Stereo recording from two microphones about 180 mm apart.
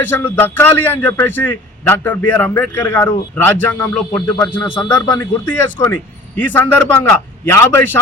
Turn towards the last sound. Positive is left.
turn(degrees=15)  # may be behind; listen again after turning